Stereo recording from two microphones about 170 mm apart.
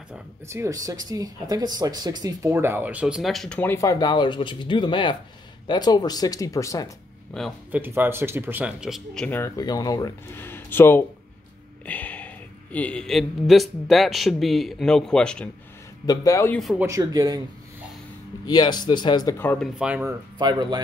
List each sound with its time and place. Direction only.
0.1 s speech: 15° right (ahead or behind); by 6.9 s 20° left (ahead or behind)
7.7 s speech: 10° right (ahead or behind); by 9.4 s 5° left (ahead or behind)
9.4 s speech: 20° left (ahead or behind)
11.8 s a sound: 10° left (ahead or behind)
12.7 s speech: 5° left (ahead or behind)
16.1 s speech: 20° left (ahead or behind)
16.5 s speech: centre (ahead or behind)
16.8 s speech: 20° right (ahead or behind)
18.4 s speech: 25° left (ahead or behind)
19.3 s speech: 10° left (ahead or behind)
19.8 s speech: 10° right (ahead or behind)
20.1 s speech: 25° right (ahead or behind)